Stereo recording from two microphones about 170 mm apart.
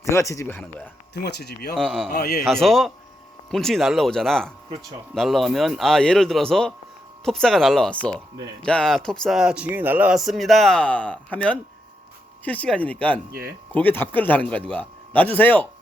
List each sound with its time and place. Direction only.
0.0 s speech: 15° left (ahead or behind)
1.1 s speech: 75° left (ahead or behind)
1.7 s speech: 5° left (ahead or behind)
2.0 s a man's voice: 60° left (ahead or behind)
2.5 s speech: centre (ahead or behind)